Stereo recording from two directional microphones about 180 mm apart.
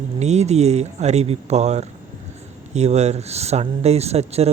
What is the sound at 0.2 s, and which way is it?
Speech, 40° right (ahead or behind).